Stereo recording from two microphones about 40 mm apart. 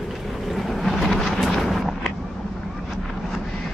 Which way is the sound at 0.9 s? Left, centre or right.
Centre.